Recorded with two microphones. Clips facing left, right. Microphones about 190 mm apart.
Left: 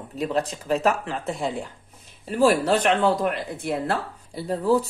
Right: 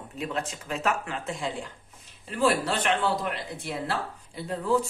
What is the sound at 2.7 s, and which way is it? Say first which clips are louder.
Speech: left 6 dB; 40° left (ahead or behind).